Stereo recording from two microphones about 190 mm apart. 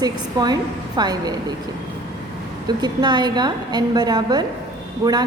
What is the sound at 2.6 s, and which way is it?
A woman's voice, 20° right (ahead or behind).